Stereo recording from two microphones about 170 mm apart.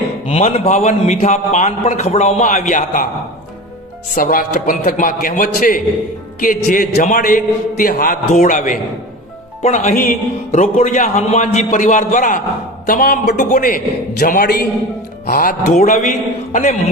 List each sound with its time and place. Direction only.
0.3 s a man's voice: 40° left (ahead or behind)
4.1 s a man's voice: 55° left (ahead or behind)
10.5 s a man's voice: 40° left (ahead or behind)